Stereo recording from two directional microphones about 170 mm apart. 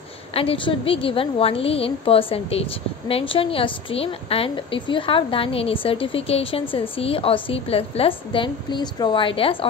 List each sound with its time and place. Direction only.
0.3 s a woman's voice: 35° left (ahead or behind)